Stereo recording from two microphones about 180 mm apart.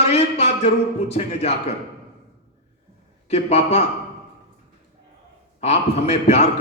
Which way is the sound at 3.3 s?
35° left (ahead or behind).